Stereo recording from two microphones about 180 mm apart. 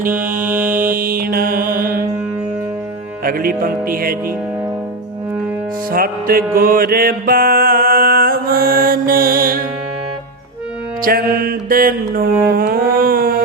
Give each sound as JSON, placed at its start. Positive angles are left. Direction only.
{"t": 0.1, "sound": "music", "side_deg": -10}
{"t": 0.7, "sound": "mantra", "side_deg": -50}
{"t": 3.2, "sound": "music", "side_deg": -55}
{"t": 5.9, "sound": "music", "side_deg": -55}
{"t": 6.6, "sound": "mantra", "side_deg": -55}
{"t": 11.0, "sound": "music", "side_deg": -55}